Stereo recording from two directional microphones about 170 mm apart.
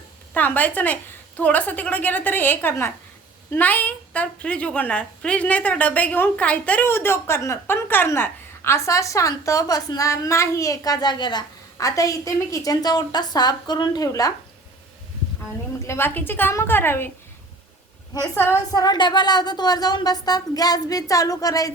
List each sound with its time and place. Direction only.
0.3 s a woman's voice: 10° left (ahead or behind)
15.8 s a woman's voice: 15° left (ahead or behind)
18.1 s a woman's voice: 15° left (ahead or behind)